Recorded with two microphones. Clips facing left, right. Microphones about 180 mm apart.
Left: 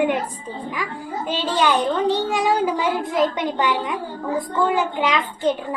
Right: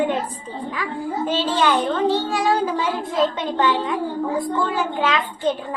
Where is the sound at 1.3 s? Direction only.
15° left (ahead or behind).